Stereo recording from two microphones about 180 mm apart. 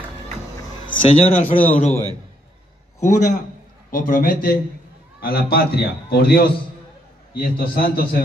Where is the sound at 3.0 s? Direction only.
45° left (ahead or behind).